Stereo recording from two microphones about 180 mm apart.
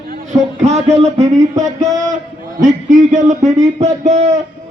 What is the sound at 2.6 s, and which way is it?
A man's voice, 45° right (ahead or behind).